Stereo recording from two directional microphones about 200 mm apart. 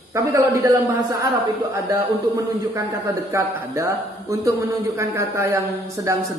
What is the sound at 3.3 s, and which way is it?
A man's voice, 15° right (ahead or behind).